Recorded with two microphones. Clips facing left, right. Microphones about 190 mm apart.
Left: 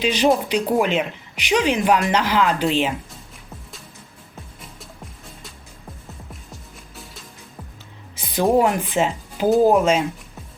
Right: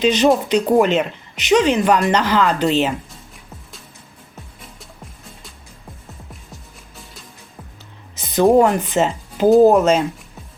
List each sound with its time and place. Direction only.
0.0 s speech: 10° left (ahead or behind)
8.1 s a sound: 10° left (ahead or behind)
8.4 s speech: 5° left (ahead or behind)